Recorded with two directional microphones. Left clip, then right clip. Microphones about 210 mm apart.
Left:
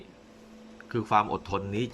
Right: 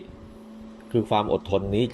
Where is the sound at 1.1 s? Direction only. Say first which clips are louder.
Right 1 dB; 35° left (ahead or behind).